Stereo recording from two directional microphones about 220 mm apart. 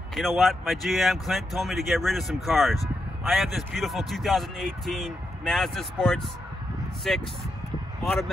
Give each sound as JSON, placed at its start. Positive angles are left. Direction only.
{"t": 0.1, "sound": "speech", "side_deg": 0}